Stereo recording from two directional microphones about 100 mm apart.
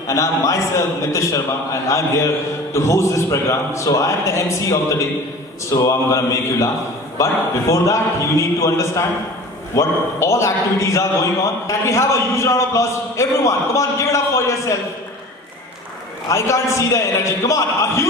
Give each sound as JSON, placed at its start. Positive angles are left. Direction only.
{"t": 0.1, "sound": "a man's voice", "side_deg": 30}
{"t": 7.7, "sound": "a man's voice", "side_deg": 30}
{"t": 16.3, "sound": "a man's voice", "side_deg": 30}